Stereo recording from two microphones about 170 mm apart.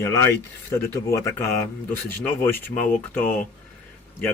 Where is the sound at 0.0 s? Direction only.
15° left (ahead or behind).